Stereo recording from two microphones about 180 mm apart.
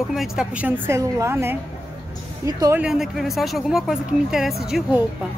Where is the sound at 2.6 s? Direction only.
15° right (ahead or behind).